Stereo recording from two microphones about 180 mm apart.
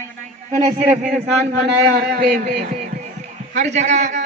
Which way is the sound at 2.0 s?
60° right (ahead or behind).